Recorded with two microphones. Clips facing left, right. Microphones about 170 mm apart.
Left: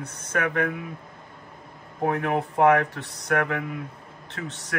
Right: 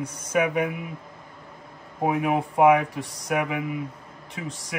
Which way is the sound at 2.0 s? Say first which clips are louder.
Right 1 dB; 10° right (ahead or behind).